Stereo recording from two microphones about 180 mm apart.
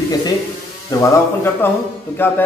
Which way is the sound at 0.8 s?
15° left (ahead or behind).